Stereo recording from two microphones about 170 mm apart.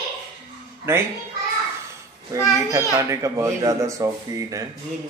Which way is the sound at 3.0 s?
20° right (ahead or behind).